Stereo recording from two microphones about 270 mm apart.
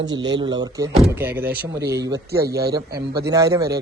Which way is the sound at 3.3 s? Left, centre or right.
Centre.